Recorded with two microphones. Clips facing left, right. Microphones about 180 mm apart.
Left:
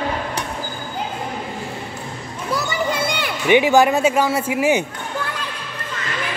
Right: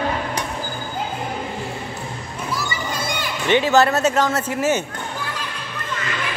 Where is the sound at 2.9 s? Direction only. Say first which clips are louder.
Left 4 dB; 60° left (ahead or behind).